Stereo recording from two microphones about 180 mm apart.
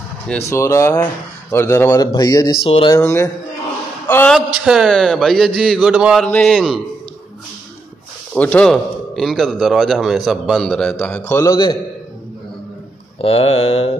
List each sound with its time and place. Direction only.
0.5 s speech: 15° left (ahead or behind)
3.0 s a man's voice: 15° left (ahead or behind); by 6.2 s 5° right (ahead or behind)
6.2 s a man's voice: 5° left (ahead or behind)
8.4 s a man's voice: 5° left (ahead or behind)
13.2 s mantra: 30° left (ahead or behind)